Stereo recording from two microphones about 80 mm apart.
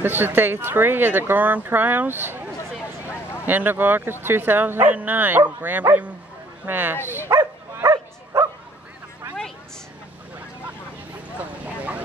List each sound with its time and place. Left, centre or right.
0.0 s speech: right
3.4 s speech: right
7.2 s dog: right
11.3 s vehicle: centre